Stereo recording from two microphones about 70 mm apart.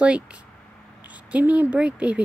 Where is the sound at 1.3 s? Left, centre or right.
Right.